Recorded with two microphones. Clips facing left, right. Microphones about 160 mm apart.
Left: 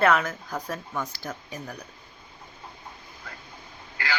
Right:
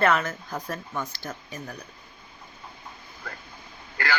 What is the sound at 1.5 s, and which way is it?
Speech, 10° left (ahead or behind).